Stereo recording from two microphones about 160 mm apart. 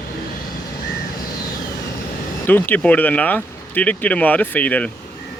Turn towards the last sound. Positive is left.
turn(degrees=10)  # may be behind; listen again after turning